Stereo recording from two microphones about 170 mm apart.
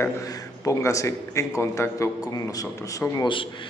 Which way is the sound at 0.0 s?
20° left (ahead or behind).